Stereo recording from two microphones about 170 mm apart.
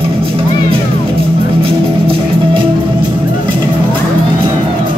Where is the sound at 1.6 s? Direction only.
30° right (ahead or behind).